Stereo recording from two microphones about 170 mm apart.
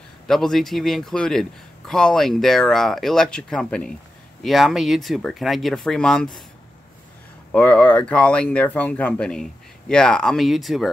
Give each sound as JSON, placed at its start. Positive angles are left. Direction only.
{"t": 0.3, "sound": "a man's voice", "side_deg": 0}
{"t": 7.5, "sound": "speech", "side_deg": 10}